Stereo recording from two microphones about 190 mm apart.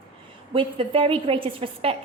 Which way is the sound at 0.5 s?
30° right (ahead or behind).